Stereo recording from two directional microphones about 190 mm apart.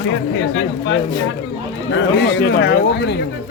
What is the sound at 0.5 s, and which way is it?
A man's voice, 70° left (ahead or behind).